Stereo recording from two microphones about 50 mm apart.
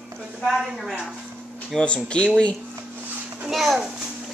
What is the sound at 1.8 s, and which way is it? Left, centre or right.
Speech, left.